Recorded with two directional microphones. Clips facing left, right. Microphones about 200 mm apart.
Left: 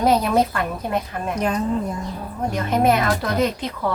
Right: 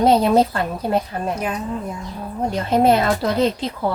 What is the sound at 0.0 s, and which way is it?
Speech, 30° right (ahead or behind).